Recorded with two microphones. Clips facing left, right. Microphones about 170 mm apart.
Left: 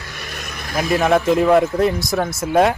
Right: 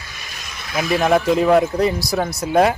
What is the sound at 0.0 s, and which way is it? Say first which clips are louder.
Vehicle: left 5 dB; 60° left (ahead or behind).